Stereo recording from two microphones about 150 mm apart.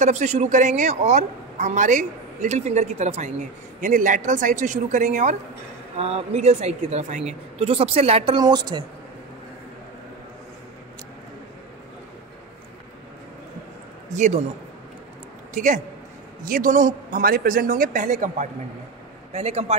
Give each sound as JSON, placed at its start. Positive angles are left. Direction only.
{"t": 0.0, "sound": "a man's voice", "side_deg": -50}
{"t": 5.9, "sound": "a man's voice", "side_deg": -45}
{"t": 8.4, "sound": "a woman's voice", "side_deg": -25}
{"t": 14.0, "sound": "a sound", "side_deg": -50}
{"t": 15.5, "sound": "a man's voice", "side_deg": -60}
{"t": 19.3, "sound": "a man's voice", "side_deg": -45}